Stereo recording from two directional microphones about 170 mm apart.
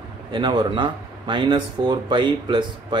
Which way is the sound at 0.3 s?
25° right (ahead or behind).